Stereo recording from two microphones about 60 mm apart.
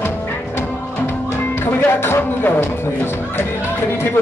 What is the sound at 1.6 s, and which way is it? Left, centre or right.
Speech, left.